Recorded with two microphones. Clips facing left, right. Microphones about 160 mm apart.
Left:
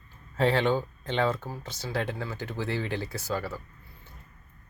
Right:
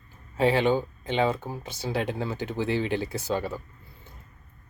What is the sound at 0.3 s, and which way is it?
Speech, 10° right (ahead or behind).